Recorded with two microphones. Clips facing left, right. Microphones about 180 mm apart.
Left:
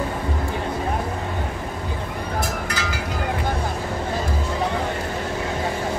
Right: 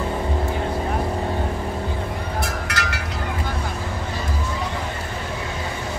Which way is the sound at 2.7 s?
70° right (ahead or behind).